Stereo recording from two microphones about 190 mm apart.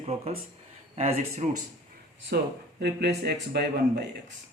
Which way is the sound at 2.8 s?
60° right (ahead or behind).